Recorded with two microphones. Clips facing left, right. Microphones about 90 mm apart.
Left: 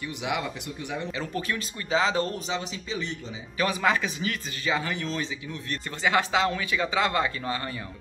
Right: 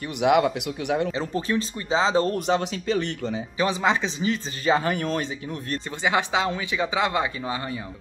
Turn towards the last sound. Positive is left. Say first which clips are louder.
# right 2 dB
turn(degrees=-15)  # may be behind; listen again after turning